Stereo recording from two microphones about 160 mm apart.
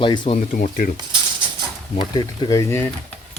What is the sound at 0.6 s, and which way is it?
Speech, 55° left (ahead or behind).